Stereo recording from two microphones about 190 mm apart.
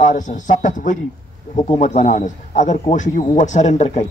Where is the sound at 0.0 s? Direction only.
40° left (ahead or behind).